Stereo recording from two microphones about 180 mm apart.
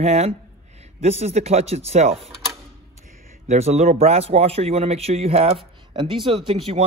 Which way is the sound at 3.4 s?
35° right (ahead or behind).